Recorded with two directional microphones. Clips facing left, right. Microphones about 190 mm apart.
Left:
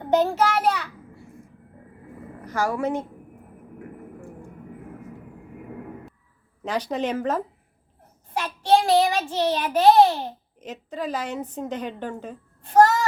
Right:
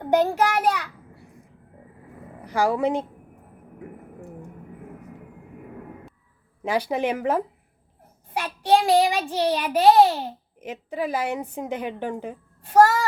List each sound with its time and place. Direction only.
0.1 s a child's voice: 10° right (ahead or behind)
2.4 s a woman's voice: 15° right (ahead or behind)
6.6 s child singing: 10° right (ahead or behind)